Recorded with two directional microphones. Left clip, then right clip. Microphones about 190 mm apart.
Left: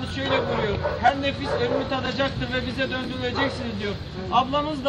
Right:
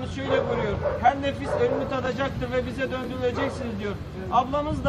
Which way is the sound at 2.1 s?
20° left (ahead or behind).